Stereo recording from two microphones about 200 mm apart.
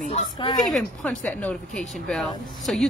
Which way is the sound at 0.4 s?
20° left (ahead or behind).